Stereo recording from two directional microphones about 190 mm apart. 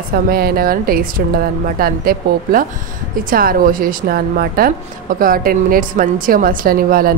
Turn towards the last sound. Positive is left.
turn(degrees=-50)  # may be behind; listen again after turning